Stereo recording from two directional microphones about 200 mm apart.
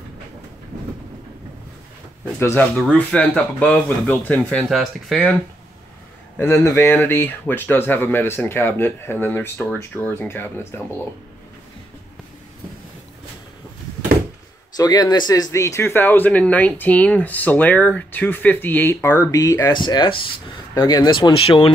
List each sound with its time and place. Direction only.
2.4 s speech: 10° left (ahead or behind)
6.3 s speech: 10° left (ahead or behind)
14.8 s speech: 20° left (ahead or behind)